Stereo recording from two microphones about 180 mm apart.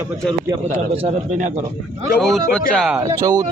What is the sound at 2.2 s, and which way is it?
Speech, 5° left (ahead or behind).